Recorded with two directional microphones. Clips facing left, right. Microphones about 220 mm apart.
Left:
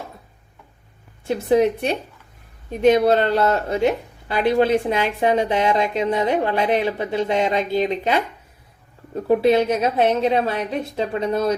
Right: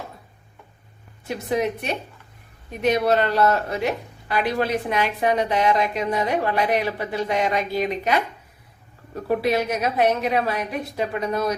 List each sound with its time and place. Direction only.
1.2 s speech: 30° left (ahead or behind)